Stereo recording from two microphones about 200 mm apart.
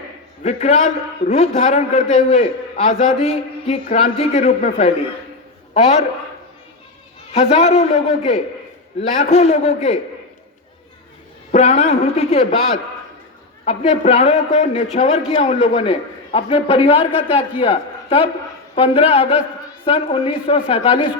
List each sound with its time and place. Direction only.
0.4 s a man's voice: 35° left (ahead or behind)
7.3 s a man's voice: 30° left (ahead or behind)
11.5 s a man's voice: 30° left (ahead or behind)
13.7 s a man's voice: 30° left (ahead or behind)